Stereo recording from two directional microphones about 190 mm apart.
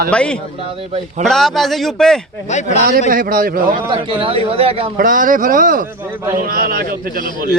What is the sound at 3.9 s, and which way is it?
Speech, 30° right (ahead or behind).